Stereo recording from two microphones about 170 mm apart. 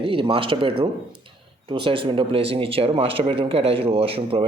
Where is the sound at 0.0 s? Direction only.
30° right (ahead or behind).